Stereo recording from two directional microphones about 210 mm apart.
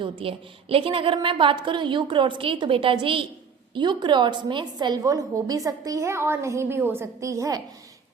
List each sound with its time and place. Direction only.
0.0 s a woman's voice: 25° right (ahead or behind)